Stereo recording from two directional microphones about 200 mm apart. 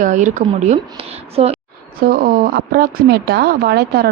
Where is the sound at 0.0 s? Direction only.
40° right (ahead or behind).